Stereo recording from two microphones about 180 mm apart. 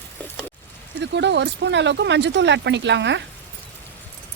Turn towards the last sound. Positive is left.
turn(degrees=-80)